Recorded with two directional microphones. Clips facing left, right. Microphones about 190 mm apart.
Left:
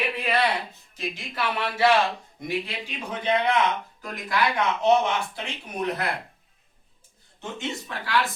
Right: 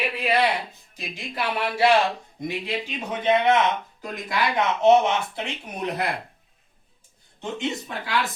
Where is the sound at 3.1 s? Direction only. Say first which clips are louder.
Right 4 dB; 20° right (ahead or behind).